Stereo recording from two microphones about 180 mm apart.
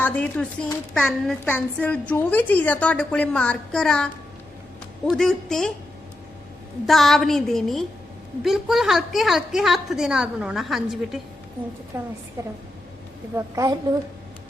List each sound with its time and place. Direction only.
0.0 s a woman's voice: 10° left (ahead or behind)
6.8 s a woman's voice: centre (ahead or behind)
11.9 s a woman's voice: 15° right (ahead or behind)
13.3 s a woman's voice: 20° right (ahead or behind)